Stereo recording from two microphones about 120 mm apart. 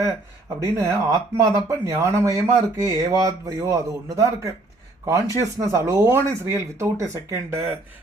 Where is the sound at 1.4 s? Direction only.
25° right (ahead or behind).